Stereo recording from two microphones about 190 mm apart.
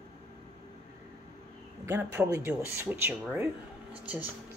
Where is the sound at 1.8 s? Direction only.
10° right (ahead or behind).